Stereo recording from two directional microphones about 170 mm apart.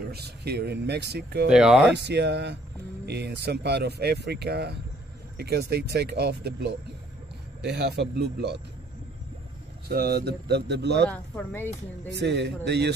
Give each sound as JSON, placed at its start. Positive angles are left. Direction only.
{"t": 0.1, "sound": "speech", "side_deg": -70}
{"t": 1.5, "sound": "speech", "side_deg": -5}
{"t": 1.9, "sound": "speech", "side_deg": -90}
{"t": 3.1, "sound": "a man's voice", "side_deg": -80}
{"t": 9.8, "sound": "speech", "side_deg": -65}
{"t": 11.1, "sound": "speech", "side_deg": 10}
{"t": 12.1, "sound": "a man's voice", "side_deg": -90}